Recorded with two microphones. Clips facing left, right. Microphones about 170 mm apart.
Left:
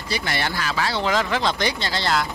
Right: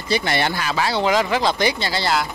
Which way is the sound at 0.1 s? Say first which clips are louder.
Right 5 dB; 20° right (ahead or behind).